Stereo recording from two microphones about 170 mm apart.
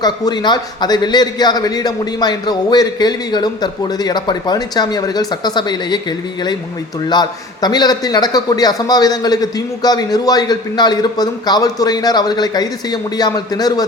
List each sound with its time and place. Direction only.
0.0 s a man's voice: 25° left (ahead or behind)